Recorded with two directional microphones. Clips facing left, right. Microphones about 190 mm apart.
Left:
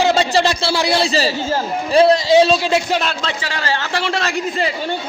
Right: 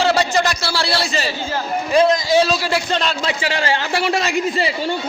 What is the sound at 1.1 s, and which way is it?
A man's voice, 35° left (ahead or behind).